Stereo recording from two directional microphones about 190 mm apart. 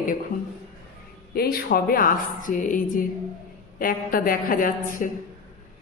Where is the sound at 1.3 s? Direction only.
55° left (ahead or behind).